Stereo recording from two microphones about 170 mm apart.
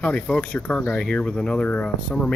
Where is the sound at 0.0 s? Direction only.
5° left (ahead or behind).